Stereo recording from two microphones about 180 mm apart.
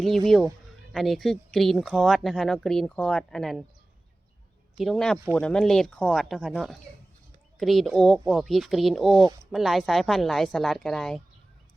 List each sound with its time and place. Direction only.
0.9 s speech: centre (ahead or behind)
4.8 s speech: centre (ahead or behind)
9.1 s speech: 25° right (ahead or behind)
9.5 s speech: centre (ahead or behind)